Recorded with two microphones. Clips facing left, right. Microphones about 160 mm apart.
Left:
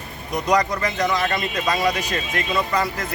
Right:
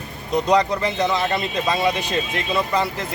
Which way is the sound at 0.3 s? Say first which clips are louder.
Right 2 dB; 30° right (ahead or behind).